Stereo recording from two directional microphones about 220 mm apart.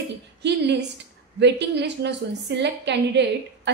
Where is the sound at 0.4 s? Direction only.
50° right (ahead or behind).